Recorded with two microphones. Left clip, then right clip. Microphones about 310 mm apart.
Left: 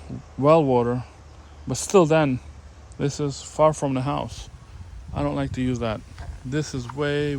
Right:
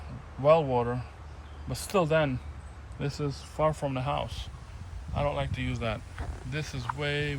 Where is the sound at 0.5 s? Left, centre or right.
Left.